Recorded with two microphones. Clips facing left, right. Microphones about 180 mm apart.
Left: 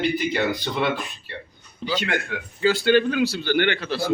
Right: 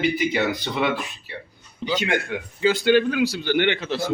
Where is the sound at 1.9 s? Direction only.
15° right (ahead or behind).